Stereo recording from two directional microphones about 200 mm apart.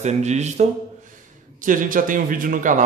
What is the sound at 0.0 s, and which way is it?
A man's voice, 35° right (ahead or behind).